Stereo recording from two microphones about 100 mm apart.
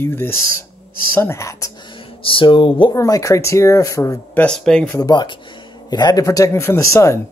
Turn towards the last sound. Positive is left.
turn(degrees=30)  # may be behind; listen again after turning